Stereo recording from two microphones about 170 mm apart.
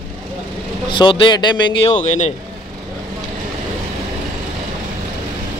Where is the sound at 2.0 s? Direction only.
45° left (ahead or behind).